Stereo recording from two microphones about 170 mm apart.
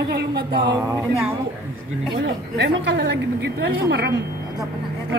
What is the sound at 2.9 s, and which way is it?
A woman's voice, 90° right.